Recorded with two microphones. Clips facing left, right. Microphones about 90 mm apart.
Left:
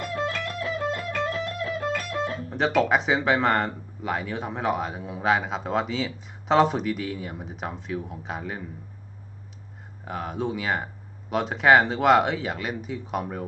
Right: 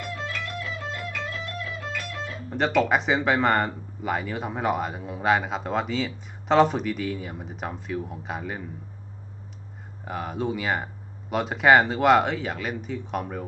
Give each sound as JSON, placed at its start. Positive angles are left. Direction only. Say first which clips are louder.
{"t": 0.1, "sound": "music", "louder": "left 5 dB", "side_deg": 40}
{"t": 2.5, "sound": "speech", "louder": "right 1 dB", "side_deg": 0}
{"t": 10.0, "sound": "speech", "louder": "even", "side_deg": 0}